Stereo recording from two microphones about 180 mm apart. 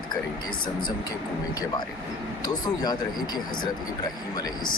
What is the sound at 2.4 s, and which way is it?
Speech, 20° left (ahead or behind).